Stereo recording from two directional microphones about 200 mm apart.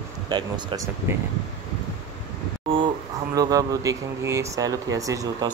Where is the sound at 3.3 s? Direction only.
15° right (ahead or behind).